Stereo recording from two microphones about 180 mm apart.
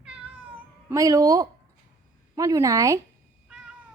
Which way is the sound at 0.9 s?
20° right (ahead or behind).